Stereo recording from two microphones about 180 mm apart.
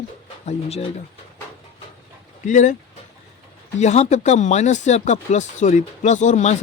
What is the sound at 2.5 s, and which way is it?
Speech, 45° left (ahead or behind).